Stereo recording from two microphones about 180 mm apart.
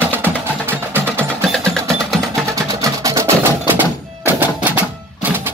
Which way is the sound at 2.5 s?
20° right (ahead or behind).